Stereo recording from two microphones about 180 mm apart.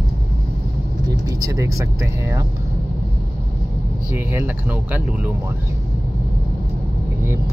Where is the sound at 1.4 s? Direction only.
20° right (ahead or behind).